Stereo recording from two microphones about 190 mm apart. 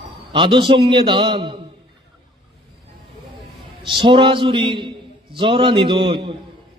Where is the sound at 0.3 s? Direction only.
25° right (ahead or behind).